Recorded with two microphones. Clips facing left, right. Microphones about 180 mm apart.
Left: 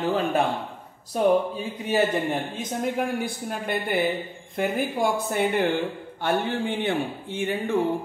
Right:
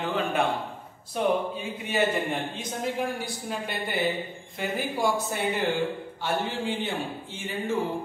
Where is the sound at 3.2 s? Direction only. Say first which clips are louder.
Left 3 dB; 55° left (ahead or behind).